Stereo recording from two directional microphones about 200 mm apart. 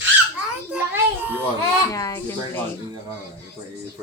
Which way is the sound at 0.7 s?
10° right (ahead or behind).